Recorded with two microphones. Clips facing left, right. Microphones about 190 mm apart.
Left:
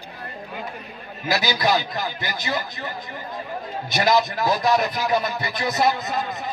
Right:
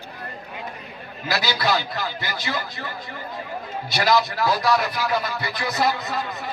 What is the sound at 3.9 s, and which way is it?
Speech, 20° left (ahead or behind).